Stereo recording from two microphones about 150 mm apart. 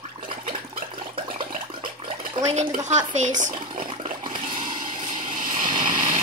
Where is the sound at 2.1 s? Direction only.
50° right (ahead or behind).